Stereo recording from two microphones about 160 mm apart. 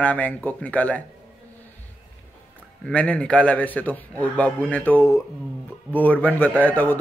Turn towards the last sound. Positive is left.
turn(degrees=10)  # may be behind; listen again after turning